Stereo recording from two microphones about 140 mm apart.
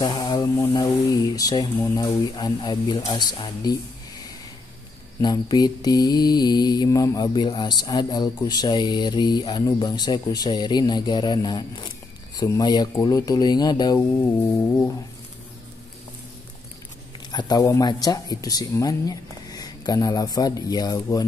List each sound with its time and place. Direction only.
0.0 s speech: 30° left (ahead or behind)
5.2 s speech: 30° left (ahead or behind)
17.3 s speech: 30° left (ahead or behind)